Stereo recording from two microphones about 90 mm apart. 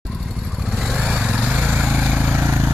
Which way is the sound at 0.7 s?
Centre (ahead or behind).